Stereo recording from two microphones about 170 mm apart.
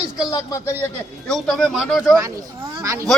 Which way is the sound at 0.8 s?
5° left (ahead or behind).